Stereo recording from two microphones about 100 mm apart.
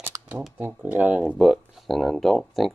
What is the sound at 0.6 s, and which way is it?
Speech, 15° right (ahead or behind).